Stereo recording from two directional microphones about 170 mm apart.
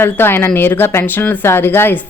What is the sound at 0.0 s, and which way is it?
Speech, 10° left (ahead or behind).